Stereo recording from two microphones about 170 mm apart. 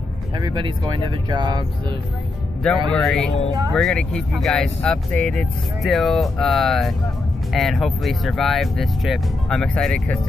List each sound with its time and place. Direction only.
0.4 s speech: 25° right (ahead or behind)
2.9 s speech: 5° left (ahead or behind)